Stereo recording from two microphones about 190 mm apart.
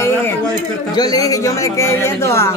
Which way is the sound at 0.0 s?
10° left (ahead or behind).